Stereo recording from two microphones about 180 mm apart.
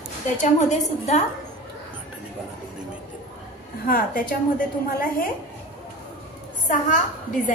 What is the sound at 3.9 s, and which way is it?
A woman's voice, 55° left (ahead or behind).